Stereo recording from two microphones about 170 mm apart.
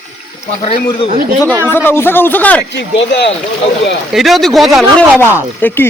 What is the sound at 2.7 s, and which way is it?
Speech, 90° left.